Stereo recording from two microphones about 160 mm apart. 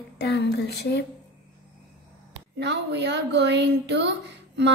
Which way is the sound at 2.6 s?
90° right.